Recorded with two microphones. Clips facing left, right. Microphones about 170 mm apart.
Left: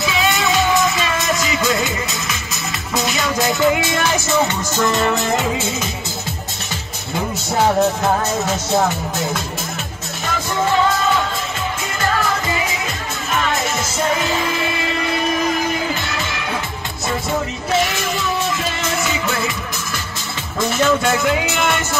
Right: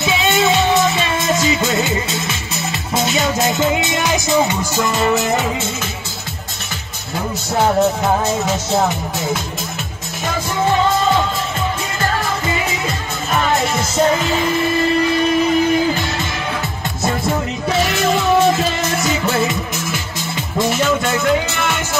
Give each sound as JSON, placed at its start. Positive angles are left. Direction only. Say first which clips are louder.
{"t": 0.0, "sound": "music", "louder": "right 3 dB", "side_deg": -25}
{"t": 17.9, "sound": "music", "louder": "right 7 dB", "side_deg": -55}
{"t": 21.0, "sound": "music", "louder": "right 1 dB", "side_deg": 5}